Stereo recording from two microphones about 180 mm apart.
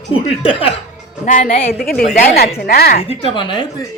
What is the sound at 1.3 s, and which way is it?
A woman's voice, 50° left (ahead or behind).